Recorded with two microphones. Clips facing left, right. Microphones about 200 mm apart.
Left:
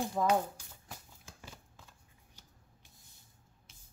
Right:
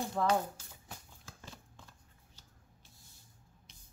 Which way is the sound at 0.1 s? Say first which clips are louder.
Left 1 dB; 10° left (ahead or behind).